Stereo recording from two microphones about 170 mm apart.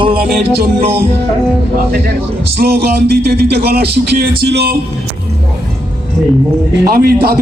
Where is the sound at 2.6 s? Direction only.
70° right (ahead or behind).